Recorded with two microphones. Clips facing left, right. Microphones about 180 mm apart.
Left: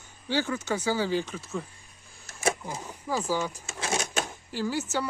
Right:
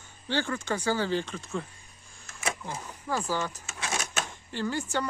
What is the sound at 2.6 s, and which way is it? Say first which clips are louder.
Speech: left 1 dB; 10° left (ahead or behind).